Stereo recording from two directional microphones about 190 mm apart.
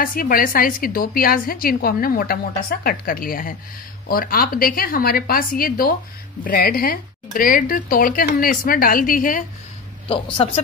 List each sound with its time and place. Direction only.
0.0 s a woman's voice: 50° left (ahead or behind)
10.0 s speech: 25° left (ahead or behind)